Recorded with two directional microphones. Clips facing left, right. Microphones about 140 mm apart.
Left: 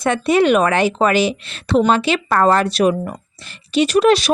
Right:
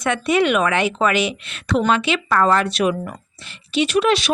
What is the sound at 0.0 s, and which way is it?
Speech, 35° left (ahead or behind).